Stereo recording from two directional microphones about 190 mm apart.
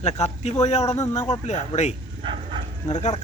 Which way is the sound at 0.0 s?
35° left (ahead or behind).